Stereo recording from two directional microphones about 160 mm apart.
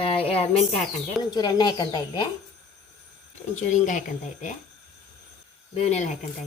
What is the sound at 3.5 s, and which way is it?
Speech, 50° left (ahead or behind).